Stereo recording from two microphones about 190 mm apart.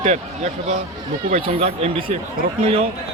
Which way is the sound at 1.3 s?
35° right (ahead or behind).